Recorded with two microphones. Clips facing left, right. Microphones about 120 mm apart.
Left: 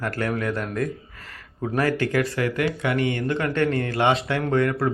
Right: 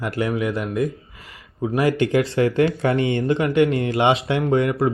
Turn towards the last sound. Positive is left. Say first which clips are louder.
# right 3 dB
turn(degrees=-15)  # may be behind; listen again after turning